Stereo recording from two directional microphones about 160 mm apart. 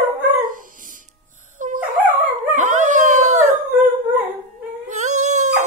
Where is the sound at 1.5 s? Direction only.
55° right (ahead or behind).